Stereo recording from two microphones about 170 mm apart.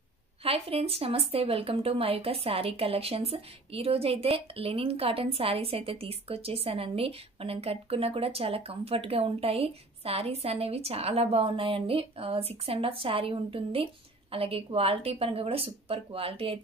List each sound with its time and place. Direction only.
0.4 s speech: 35° right (ahead or behind)